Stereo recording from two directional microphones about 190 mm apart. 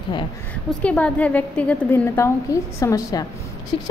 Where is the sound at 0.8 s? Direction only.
5° left (ahead or behind).